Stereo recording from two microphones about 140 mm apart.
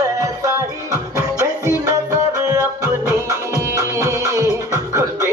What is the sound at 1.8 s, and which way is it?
Music, 25° right (ahead or behind).